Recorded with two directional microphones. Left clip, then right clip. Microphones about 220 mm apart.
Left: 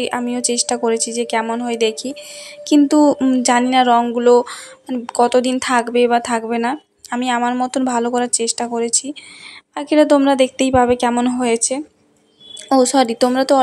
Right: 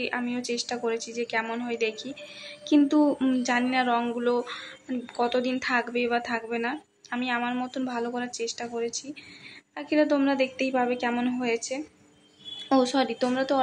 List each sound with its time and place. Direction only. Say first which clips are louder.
0.0 s speech: left 10 dB; 35° left (ahead or behind)